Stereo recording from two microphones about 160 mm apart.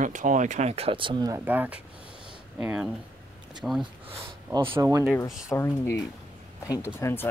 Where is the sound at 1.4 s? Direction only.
10° right (ahead or behind).